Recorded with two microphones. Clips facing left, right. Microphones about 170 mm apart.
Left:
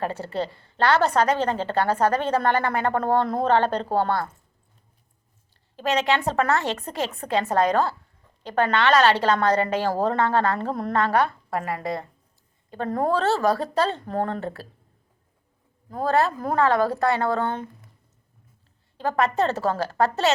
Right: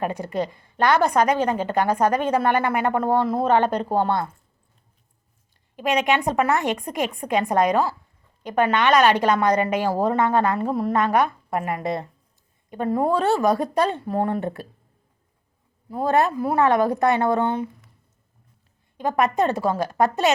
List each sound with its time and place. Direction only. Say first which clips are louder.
0.0 s a woman's voice: right 2 dB; 15° right (ahead or behind)
5.7 s a woman's voice: right 2 dB; 15° right (ahead or behind)
12.7 s a woman's voice: right 2 dB; 10° right (ahead or behind)
15.9 s a woman's voice: right 2 dB; 15° right (ahead or behind)
18.9 s a woman's voice: right 2 dB; 15° right (ahead or behind)